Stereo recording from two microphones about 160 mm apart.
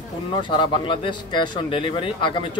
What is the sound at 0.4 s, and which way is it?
Speech, 30° left (ahead or behind).